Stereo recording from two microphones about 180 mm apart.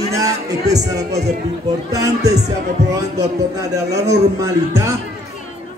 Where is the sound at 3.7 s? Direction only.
20° right (ahead or behind).